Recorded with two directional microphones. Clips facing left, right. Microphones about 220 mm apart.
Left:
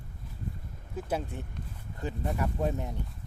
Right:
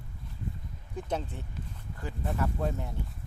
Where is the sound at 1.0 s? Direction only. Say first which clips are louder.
Left 1 dB; 10° left (ahead or behind).